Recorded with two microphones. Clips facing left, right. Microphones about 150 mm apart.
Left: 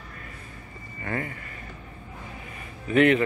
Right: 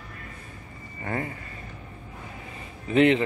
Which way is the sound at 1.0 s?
25° right (ahead or behind).